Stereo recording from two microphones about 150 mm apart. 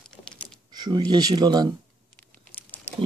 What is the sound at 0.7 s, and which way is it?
Speech, 30° right (ahead or behind).